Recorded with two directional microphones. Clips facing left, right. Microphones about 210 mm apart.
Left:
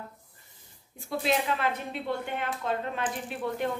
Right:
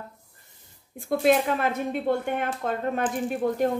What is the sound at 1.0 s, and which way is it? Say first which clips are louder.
A woman's voice: right 7 dB; 50° right (ahead or behind).